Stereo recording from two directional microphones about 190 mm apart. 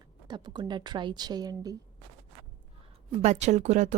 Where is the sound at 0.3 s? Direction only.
25° right (ahead or behind).